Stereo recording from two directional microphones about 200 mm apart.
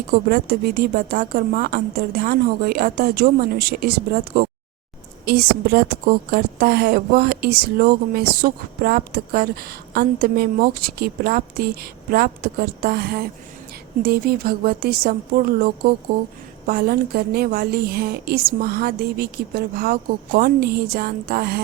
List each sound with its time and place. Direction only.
0.3 s a woman's voice: 45° right (ahead or behind)